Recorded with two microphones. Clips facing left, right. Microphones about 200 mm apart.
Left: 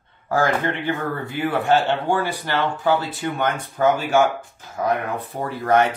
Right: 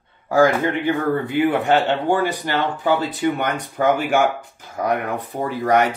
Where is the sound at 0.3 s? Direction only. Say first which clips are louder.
Right 5 dB; 15° right (ahead or behind).